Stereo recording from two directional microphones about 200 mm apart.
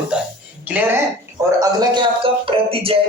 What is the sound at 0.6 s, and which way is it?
A woman's voice, 10° right (ahead or behind).